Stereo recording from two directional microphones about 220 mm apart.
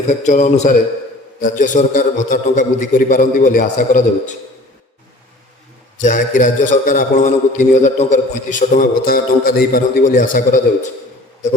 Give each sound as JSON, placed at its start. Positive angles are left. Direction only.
{"t": 0.1, "sound": "a man's voice", "side_deg": 30}
{"t": 6.0, "sound": "a man's voice", "side_deg": 35}